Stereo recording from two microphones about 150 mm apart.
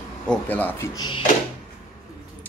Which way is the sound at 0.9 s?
30° left (ahead or behind).